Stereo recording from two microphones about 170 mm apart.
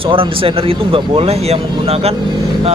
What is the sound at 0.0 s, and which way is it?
Speech, 30° right (ahead or behind).